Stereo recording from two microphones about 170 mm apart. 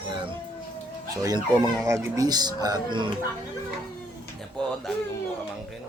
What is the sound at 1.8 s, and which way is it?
Speech, 20° right (ahead or behind).